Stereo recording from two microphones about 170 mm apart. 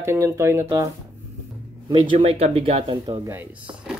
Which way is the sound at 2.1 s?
40° right (ahead or behind).